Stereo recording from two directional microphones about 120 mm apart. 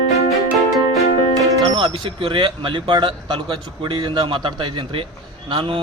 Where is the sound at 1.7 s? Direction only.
50° right (ahead or behind).